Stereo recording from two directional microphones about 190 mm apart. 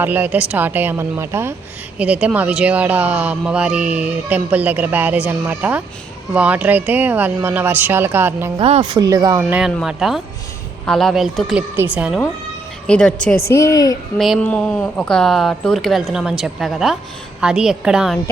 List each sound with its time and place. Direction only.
0.0 s speech: 10° right (ahead or behind)
8.5 s speech: 30° right (ahead or behind); by 12.2 s 5° right (ahead or behind)
12.9 s speech: 5° left (ahead or behind)
14.2 s speech: 5° left (ahead or behind)